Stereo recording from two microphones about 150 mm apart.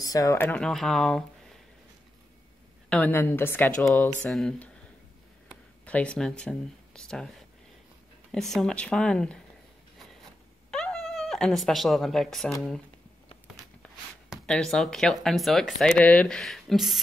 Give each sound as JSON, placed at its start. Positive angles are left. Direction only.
{"t": 0.0, "sound": "speech", "side_deg": 25}
{"t": 0.5, "sound": "speech", "side_deg": 5}
{"t": 2.9, "sound": "a woman's voice", "side_deg": 10}
{"t": 3.8, "sound": "speech", "side_deg": 0}
{"t": 5.9, "sound": "speech", "side_deg": 10}
{"t": 10.7, "sound": "speech", "side_deg": 5}
{"t": 14.3, "sound": "speech", "side_deg": 5}